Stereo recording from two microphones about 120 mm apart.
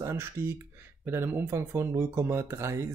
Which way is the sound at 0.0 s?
20° right (ahead or behind).